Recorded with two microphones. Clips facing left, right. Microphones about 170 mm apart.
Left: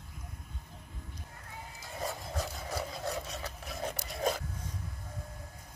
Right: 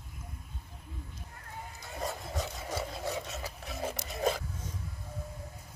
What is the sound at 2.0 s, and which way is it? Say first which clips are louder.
Rub: right 1 dB; centre (ahead or behind).